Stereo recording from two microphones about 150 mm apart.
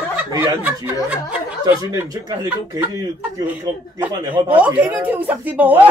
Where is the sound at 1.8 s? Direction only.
25° right (ahead or behind).